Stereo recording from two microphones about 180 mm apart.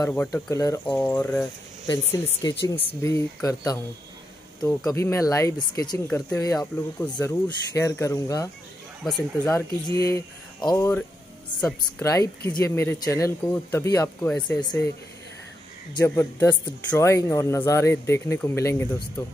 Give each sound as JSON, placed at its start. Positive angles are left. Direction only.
{"t": 0.0, "sound": "speech", "side_deg": 10}
{"t": 9.0, "sound": "speech", "side_deg": 0}
{"t": 9.5, "sound": "speech", "side_deg": 15}
{"t": 12.0, "sound": "speech", "side_deg": 15}
{"t": 14.6, "sound": "speech", "side_deg": 25}
{"t": 16.2, "sound": "speech", "side_deg": 10}